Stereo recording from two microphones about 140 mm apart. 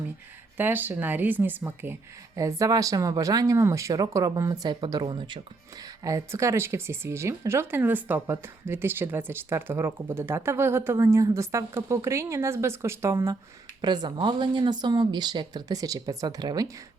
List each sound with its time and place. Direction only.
0.5 s speech: 15° right (ahead or behind); by 5.4 s 35° right (ahead or behind)
6.0 s speech: 25° right (ahead or behind)
13.8 s speech: 30° right (ahead or behind)